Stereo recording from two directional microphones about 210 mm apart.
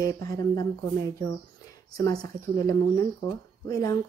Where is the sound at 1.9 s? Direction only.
15° left (ahead or behind).